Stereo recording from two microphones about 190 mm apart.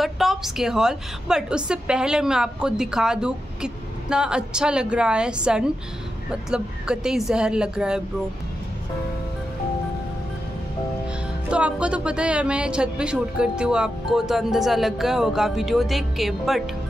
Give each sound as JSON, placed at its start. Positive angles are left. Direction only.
{"t": 0.0, "sound": "a woman's voice", "side_deg": 0}
{"t": 11.5, "sound": "a woman's voice", "side_deg": -5}